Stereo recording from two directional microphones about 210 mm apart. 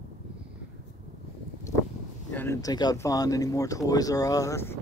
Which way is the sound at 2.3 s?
15° left (ahead or behind).